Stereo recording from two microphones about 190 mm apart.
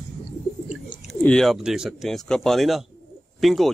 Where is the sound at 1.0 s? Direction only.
5° left (ahead or behind).